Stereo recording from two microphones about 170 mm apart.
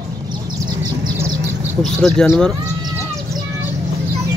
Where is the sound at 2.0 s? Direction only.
5° left (ahead or behind).